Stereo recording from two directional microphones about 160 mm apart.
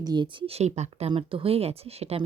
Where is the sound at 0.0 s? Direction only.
25° right (ahead or behind).